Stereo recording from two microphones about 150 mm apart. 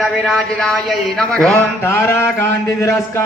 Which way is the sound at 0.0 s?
Centre (ahead or behind).